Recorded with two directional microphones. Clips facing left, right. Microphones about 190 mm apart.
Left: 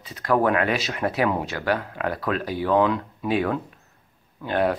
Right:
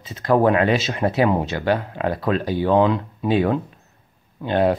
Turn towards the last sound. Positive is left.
turn(degrees=-25)  # may be behind; listen again after turning